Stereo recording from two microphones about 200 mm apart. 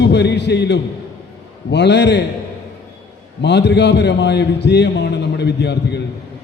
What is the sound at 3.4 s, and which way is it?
A man's voice, 60° left (ahead or behind).